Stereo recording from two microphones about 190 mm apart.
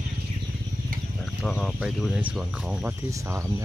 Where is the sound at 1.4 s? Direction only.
Centre (ahead or behind); by 3.6 s 15° right (ahead or behind).